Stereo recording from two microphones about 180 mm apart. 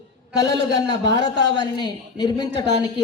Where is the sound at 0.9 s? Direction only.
80° right.